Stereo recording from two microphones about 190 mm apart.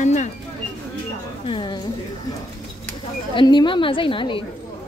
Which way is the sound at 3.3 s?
25° left (ahead or behind).